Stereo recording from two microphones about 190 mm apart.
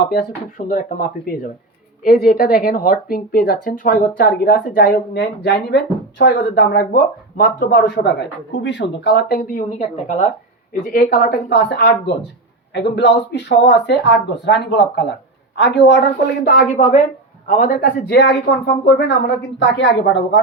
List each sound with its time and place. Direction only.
0.7 s speech: 45° left (ahead or behind)
8.6 s speech: 65° left (ahead or behind)
9.4 s speech: 40° left (ahead or behind)
16.6 s a woman's voice: 40° left (ahead or behind); by 20.4 s 70° left (ahead or behind)